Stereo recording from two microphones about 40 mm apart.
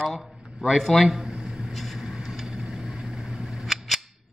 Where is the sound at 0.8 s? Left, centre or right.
Centre.